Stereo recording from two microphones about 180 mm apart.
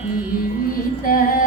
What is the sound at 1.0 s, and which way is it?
Female singing, 50° left (ahead or behind).